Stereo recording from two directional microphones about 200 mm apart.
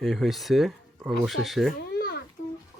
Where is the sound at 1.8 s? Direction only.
55° left (ahead or behind).